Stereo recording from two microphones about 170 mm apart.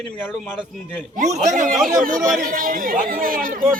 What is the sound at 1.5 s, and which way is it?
Speech, 50° right (ahead or behind).